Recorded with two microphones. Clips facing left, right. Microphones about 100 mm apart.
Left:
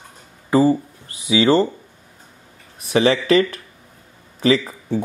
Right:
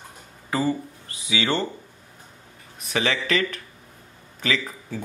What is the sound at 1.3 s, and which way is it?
Speech, 35° left (ahead or behind).